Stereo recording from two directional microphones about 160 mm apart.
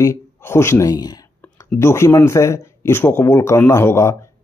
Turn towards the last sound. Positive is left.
turn(degrees=15)  # may be behind; listen again after turning